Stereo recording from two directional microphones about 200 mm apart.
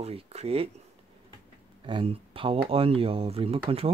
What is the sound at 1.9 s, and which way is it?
Speech, 25° right (ahead or behind).